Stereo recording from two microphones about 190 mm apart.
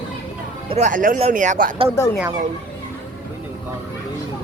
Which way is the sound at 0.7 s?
40° right (ahead or behind).